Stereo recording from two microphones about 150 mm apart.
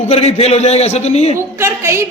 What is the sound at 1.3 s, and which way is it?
Speech, 15° right (ahead or behind).